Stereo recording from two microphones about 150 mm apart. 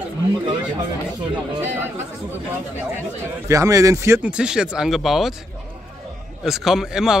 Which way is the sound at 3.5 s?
20° right (ahead or behind).